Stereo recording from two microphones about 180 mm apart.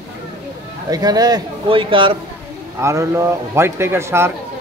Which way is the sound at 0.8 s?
20° right (ahead or behind).